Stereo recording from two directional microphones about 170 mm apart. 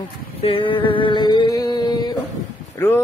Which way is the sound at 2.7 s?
15° left (ahead or behind).